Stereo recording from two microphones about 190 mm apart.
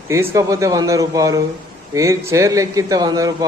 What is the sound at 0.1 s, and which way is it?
Speech, 15° right (ahead or behind).